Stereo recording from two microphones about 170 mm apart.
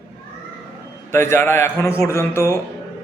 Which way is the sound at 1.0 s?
15° left (ahead or behind).